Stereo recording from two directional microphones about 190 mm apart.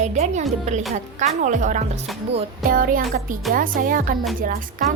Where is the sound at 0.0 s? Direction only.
40° right (ahead or behind).